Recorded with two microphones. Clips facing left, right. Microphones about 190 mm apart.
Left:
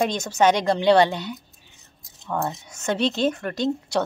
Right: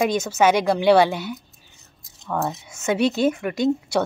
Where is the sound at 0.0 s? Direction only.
5° right (ahead or behind).